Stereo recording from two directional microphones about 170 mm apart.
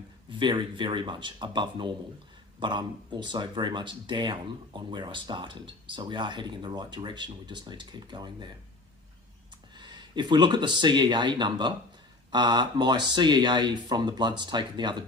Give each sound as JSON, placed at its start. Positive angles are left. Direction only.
{"t": 0.3, "sound": "speech", "side_deg": -25}
{"t": 9.8, "sound": "speech", "side_deg": -25}